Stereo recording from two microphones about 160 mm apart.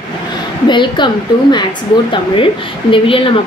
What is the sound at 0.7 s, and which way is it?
Speech, 30° left (ahead or behind).